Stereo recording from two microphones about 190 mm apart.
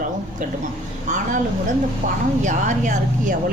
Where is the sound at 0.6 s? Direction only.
40° right (ahead or behind).